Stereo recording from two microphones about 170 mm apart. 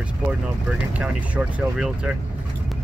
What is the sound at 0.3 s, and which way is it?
Speech, 5° right (ahead or behind).